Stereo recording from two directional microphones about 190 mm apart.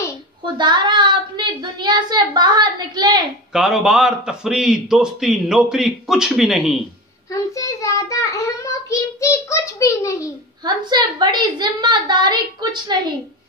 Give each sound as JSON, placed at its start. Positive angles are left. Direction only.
{"t": 0.6, "sound": "a woman's voice", "side_deg": -25}
{"t": 3.5, "sound": "a man's voice", "side_deg": 0}
{"t": 7.3, "sound": "child singing", "side_deg": 15}
{"t": 9.2, "sound": "a sound", "side_deg": 15}
{"t": 10.6, "sound": "a woman's voice", "side_deg": -25}